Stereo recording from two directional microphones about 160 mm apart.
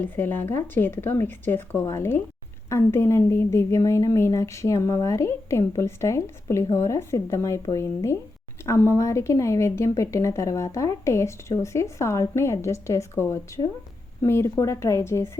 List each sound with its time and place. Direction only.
0.0 s a woman's voice: 10° left (ahead or behind)